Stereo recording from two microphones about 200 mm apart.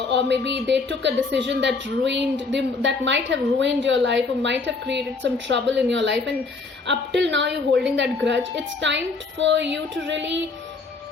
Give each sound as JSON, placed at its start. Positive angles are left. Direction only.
{"t": 0.1, "sound": "a woman's voice", "side_deg": -60}
{"t": 7.2, "sound": "a woman's voice", "side_deg": -60}